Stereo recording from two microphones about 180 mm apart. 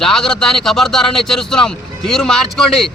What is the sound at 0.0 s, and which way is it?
A man's voice, centre (ahead or behind).